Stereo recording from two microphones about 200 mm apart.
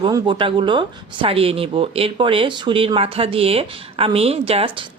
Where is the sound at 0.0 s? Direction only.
25° right (ahead or behind).